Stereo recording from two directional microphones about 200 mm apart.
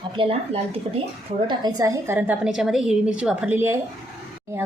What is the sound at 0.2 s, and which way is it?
Speech, 30° right (ahead or behind).